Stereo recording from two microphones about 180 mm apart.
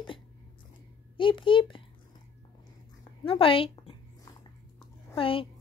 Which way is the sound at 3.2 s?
30° left (ahead or behind).